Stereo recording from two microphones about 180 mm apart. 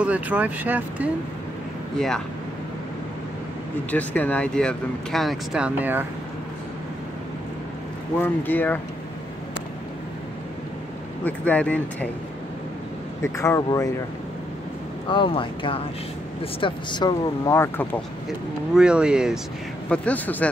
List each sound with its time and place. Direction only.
0.0 s speech: 10° right (ahead or behind)
2.0 s speech: 5° left (ahead or behind)
3.9 s speech: 10° left (ahead or behind); by 6.0 s 10° right (ahead or behind)
8.2 s speech: 10° left (ahead or behind)
11.2 s speech: 10° left (ahead or behind)
13.2 s speech: 15° left (ahead or behind)
15.0 s speech: 30° left (ahead or behind); by 18.0 s 10° left (ahead or behind)
18.8 s speech: 5° right (ahead or behind)
19.9 s speech: 10° left (ahead or behind)